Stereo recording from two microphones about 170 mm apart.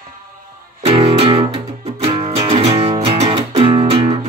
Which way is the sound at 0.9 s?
35° right (ahead or behind).